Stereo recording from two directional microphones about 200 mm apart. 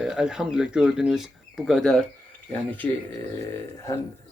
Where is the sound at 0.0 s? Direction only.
5° right (ahead or behind).